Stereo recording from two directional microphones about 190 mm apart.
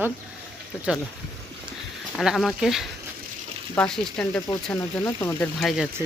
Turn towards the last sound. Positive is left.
turn(degrees=0)  # may be behind; listen again after turning